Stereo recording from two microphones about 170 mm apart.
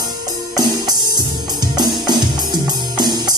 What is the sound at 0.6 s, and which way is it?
Music, 25° right (ahead or behind).